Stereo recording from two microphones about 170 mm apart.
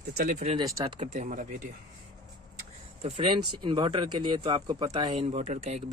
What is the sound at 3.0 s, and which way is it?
Speech, 30° right (ahead or behind).